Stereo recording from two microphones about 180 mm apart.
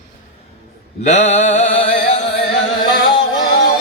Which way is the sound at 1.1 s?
40° left (ahead or behind).